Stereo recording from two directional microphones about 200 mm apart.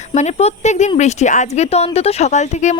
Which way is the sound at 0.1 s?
35° left (ahead or behind).